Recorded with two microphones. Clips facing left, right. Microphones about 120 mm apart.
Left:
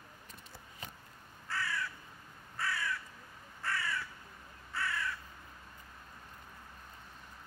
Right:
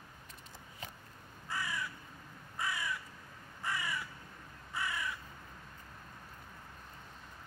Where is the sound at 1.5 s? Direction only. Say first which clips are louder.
Left 1 dB; 15° right (ahead or behind).